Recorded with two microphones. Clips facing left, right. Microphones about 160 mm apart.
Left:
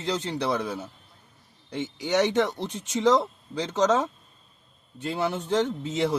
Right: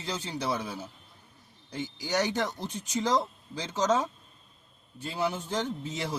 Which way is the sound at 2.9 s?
75° left (ahead or behind).